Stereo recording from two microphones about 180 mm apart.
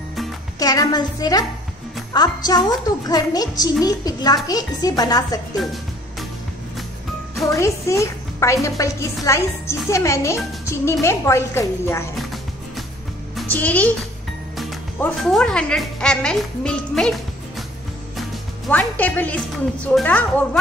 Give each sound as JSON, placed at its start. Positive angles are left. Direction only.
{"t": 0.6, "sound": "a woman's voice", "side_deg": 20}
{"t": 5.6, "sound": "music", "side_deg": 0}
{"t": 7.5, "sound": "a woman's voice", "side_deg": 15}
{"t": 13.5, "sound": "a woman's voice", "side_deg": 10}
{"t": 18.7, "sound": "a woman's voice", "side_deg": 10}